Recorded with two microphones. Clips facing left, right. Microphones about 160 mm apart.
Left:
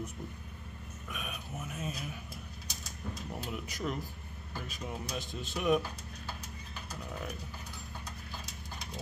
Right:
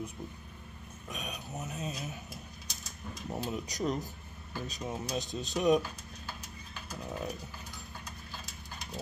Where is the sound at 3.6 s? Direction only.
40° right (ahead or behind).